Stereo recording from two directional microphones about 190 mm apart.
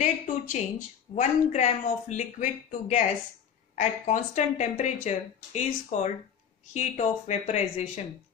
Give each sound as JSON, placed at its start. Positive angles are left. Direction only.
{"t": 0.0, "sound": "a woman's voice", "side_deg": 40}